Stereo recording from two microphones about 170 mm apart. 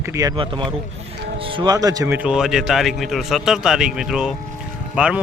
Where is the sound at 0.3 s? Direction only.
30° right (ahead or behind).